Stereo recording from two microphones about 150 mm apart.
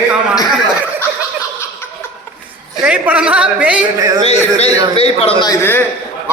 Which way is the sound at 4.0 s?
25° right (ahead or behind).